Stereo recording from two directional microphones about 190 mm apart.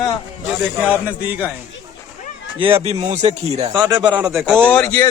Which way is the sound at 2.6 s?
30° right (ahead or behind).